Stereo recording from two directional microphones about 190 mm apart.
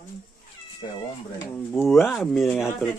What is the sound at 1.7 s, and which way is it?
Speech, centre (ahead or behind).